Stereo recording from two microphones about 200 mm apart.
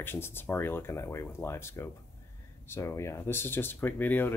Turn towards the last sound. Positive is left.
turn(degrees=10)  # may be behind; listen again after turning